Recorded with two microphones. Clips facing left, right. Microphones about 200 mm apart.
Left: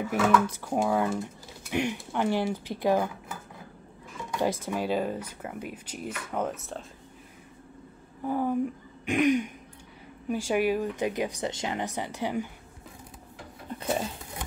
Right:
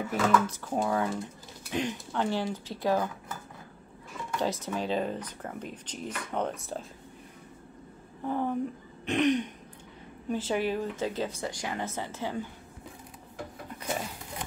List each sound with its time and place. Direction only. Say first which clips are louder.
0.1 s speech: left 2 dB; 10° left (ahead or behind)
8.2 s speech: left 3 dB; 10° left (ahead or behind)
13.7 s a sound: left 5 dB; 30° left (ahead or behind)